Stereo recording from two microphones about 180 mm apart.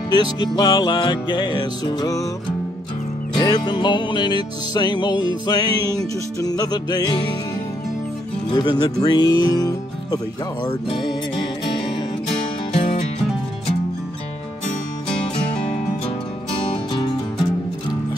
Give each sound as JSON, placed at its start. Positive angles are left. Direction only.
{"t": 0.1, "sound": "music", "side_deg": 25}
{"t": 3.3, "sound": "music", "side_deg": 25}
{"t": 8.5, "sound": "music", "side_deg": 25}
{"t": 16.7, "sound": "music", "side_deg": 25}